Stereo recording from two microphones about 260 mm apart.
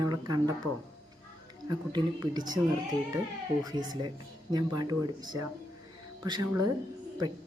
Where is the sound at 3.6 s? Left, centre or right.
Centre.